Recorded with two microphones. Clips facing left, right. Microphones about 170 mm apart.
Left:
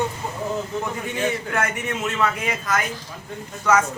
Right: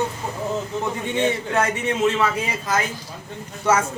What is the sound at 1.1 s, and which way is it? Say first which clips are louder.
A man's voice: right 4 dB; 25° right (ahead or behind).